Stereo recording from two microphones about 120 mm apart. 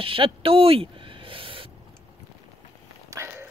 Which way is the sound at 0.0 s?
50° right (ahead or behind).